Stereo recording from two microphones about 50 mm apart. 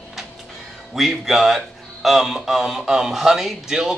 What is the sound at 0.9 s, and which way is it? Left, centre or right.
Speech, centre.